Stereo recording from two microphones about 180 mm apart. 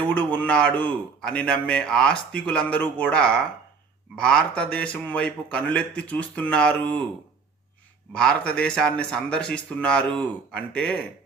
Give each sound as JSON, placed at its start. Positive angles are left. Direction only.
{"t": 0.1, "sound": "a man's voice", "side_deg": 10}
{"t": 8.1, "sound": "speech", "side_deg": 5}